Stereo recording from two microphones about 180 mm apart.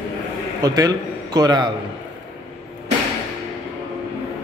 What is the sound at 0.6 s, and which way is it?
A man's voice, 20° right (ahead or behind).